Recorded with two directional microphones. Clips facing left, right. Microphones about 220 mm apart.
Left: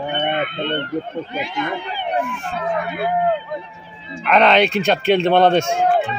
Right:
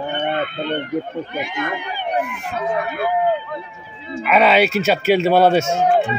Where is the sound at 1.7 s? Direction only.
10° right (ahead or behind).